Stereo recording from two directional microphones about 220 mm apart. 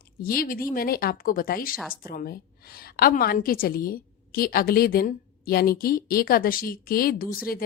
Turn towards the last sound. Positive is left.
turn(degrees=40)  # may be behind; listen again after turning